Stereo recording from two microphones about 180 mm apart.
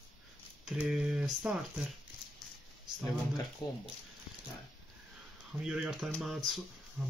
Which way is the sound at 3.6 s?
20° left (ahead or behind).